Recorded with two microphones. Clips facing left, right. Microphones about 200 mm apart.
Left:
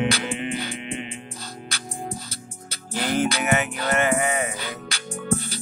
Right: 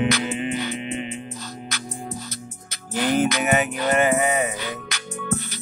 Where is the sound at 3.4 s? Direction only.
15° right (ahead or behind).